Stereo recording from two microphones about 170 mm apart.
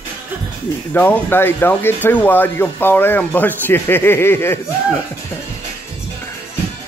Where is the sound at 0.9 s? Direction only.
10° left (ahead or behind).